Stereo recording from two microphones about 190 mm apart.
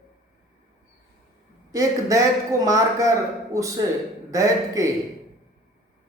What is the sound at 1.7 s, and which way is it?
A man's voice, 15° right (ahead or behind).